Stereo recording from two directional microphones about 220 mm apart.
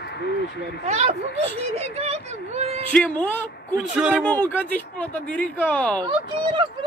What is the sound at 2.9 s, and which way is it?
Speech, 5° left (ahead or behind).